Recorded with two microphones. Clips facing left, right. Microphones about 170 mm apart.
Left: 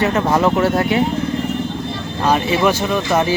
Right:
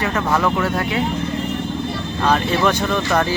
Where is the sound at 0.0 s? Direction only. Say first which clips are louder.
Left 4 dB; 25° left (ahead or behind).